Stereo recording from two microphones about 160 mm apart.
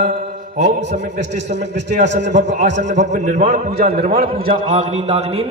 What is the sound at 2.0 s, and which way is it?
Speech, 90° right.